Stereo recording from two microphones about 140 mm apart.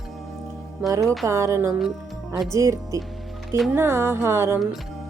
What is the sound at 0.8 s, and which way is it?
A woman's voice, 25° right (ahead or behind).